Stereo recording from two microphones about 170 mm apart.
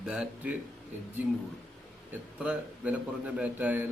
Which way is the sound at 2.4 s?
5° right (ahead or behind).